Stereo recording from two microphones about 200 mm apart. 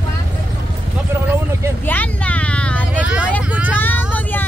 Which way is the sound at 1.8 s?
10° left (ahead or behind).